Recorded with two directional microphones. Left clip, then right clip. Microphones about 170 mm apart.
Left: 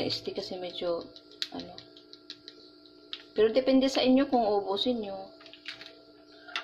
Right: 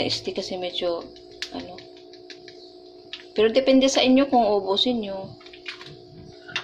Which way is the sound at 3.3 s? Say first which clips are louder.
Right 6 dB; 10° left (ahead or behind).